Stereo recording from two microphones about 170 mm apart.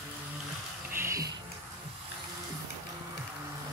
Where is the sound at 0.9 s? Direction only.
15° right (ahead or behind).